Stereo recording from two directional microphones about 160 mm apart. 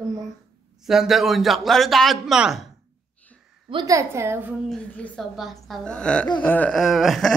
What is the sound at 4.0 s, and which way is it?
Speech, 15° right (ahead or behind).